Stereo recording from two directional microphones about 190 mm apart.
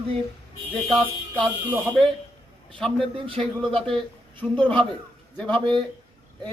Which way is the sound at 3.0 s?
30° right (ahead or behind).